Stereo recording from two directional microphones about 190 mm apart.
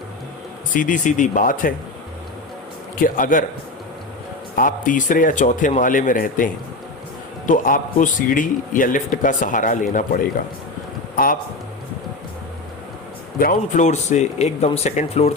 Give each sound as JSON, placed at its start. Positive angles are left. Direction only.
{"t": 0.7, "sound": "a man's voice", "side_deg": 45}
{"t": 3.0, "sound": "a man's voice", "side_deg": 45}
{"t": 4.5, "sound": "a man's voice", "side_deg": 45}
{"t": 11.2, "sound": "a man's voice", "side_deg": 50}
{"t": 13.4, "sound": "speech", "side_deg": 45}